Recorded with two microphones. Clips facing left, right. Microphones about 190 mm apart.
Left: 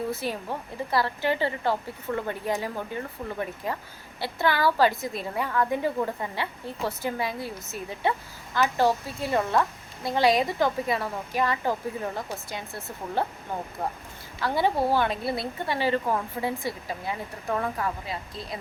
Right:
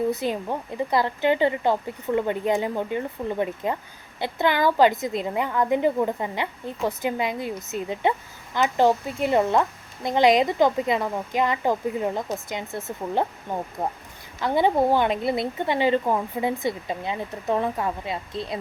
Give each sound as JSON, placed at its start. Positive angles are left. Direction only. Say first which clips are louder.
{"t": 0.1, "sound": "a woman's voice", "louder": "right 5 dB", "side_deg": -20}